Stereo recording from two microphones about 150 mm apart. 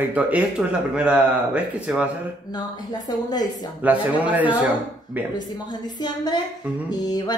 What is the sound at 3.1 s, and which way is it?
Speech, 25° left (ahead or behind).